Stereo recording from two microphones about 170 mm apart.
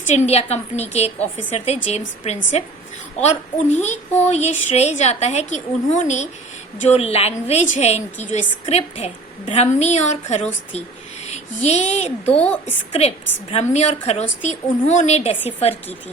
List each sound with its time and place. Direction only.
0.1 s a woman's voice: 40° left (ahead or behind)